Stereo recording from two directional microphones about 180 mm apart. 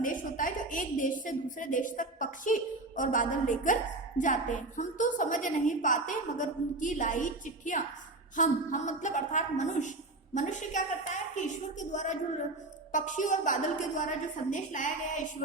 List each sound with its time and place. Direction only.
0.0 s a woman's voice: 50° left (ahead or behind)